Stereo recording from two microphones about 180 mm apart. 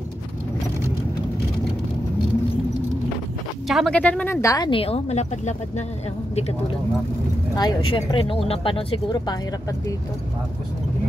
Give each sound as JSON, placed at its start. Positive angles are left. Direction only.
{"t": 3.6, "sound": "speech", "side_deg": 0}
{"t": 7.5, "sound": "speech", "side_deg": 25}